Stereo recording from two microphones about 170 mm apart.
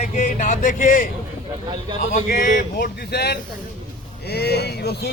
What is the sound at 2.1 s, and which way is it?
Speech, 55° left (ahead or behind).